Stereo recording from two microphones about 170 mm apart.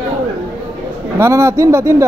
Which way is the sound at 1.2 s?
15° right (ahead or behind).